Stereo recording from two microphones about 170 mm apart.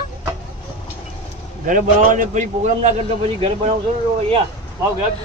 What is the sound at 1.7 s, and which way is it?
A man's voice, 50° right (ahead or behind).